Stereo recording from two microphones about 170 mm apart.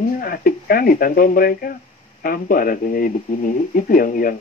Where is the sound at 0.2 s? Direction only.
55° left (ahead or behind).